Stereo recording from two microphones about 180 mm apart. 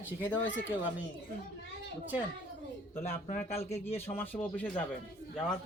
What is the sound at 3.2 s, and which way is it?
Speech, 35° left (ahead or behind).